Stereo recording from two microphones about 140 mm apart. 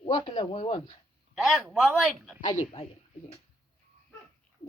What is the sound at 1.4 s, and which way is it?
Speech, centre (ahead or behind).